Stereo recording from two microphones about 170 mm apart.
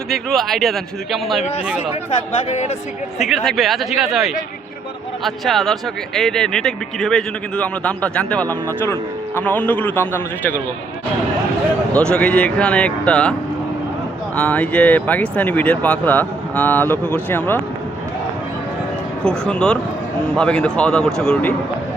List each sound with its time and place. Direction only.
0.1 s a man's voice: centre (ahead or behind)
2.5 s speech: 40° left (ahead or behind)
3.2 s a man's voice: centre (ahead or behind)
12.1 s speech: 5° left (ahead or behind)
14.3 s speech: 10° left (ahead or behind)
19.2 s a man's voice: 5° left (ahead or behind)